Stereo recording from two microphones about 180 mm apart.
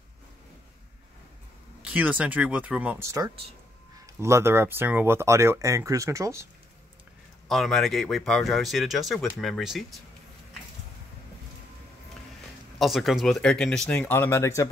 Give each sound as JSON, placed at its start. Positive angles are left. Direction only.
{"t": 1.8, "sound": "speech", "side_deg": -5}
{"t": 7.4, "sound": "speech", "side_deg": 0}
{"t": 12.7, "sound": "speech", "side_deg": 0}